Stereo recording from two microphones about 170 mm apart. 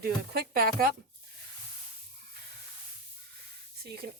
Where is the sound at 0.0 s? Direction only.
60° right (ahead or behind).